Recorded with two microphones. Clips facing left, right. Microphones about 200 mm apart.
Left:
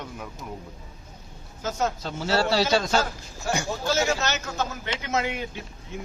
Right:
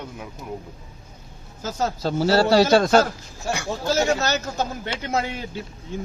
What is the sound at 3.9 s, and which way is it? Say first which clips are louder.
A man's voice: right 4 dB; 35° right (ahead or behind).